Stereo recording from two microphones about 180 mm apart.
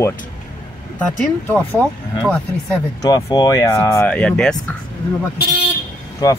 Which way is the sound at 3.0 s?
20° left (ahead or behind).